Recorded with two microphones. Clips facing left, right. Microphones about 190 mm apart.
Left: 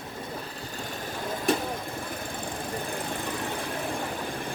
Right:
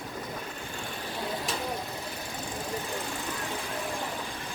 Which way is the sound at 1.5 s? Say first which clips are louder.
Left 9 dB; 55° left (ahead or behind).